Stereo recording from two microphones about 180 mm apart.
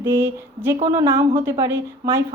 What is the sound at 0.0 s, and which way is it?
A woman's voice, 15° right (ahead or behind).